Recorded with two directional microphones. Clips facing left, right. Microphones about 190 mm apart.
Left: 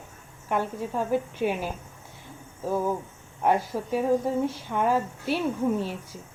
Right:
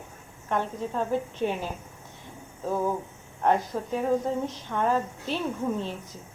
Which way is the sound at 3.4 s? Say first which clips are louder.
Even; 10° left (ahead or behind).